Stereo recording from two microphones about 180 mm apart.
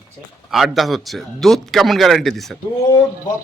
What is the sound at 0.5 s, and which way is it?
A man's voice, centre (ahead or behind).